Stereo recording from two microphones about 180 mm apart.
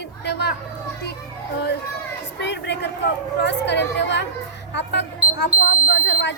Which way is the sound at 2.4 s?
75° left (ahead or behind).